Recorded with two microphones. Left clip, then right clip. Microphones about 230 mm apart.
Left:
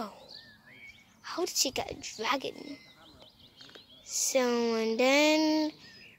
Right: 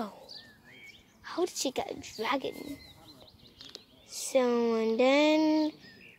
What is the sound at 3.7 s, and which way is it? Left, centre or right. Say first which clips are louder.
A woman's voice: left 7 dB; centre.